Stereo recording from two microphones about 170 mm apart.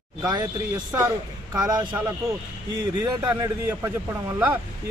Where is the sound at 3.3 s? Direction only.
15° right (ahead or behind).